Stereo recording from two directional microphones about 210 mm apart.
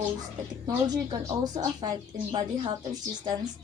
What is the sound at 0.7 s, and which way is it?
A woman's voice, 20° right (ahead or behind).